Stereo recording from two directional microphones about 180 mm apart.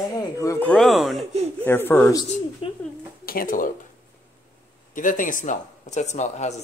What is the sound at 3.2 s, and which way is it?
Speech, 55° left (ahead or behind).